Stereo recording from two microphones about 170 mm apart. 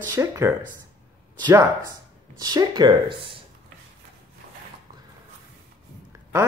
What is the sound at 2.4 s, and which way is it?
Speech, 25° right (ahead or behind).